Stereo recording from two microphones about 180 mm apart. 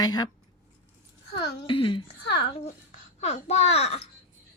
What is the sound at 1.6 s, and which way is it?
Speech, 30° left (ahead or behind).